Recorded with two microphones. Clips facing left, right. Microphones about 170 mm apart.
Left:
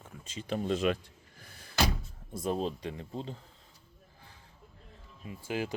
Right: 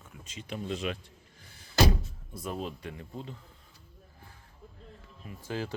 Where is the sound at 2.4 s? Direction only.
30° left (ahead or behind).